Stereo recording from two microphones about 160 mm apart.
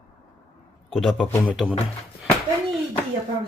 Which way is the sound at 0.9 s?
Centre (ahead or behind).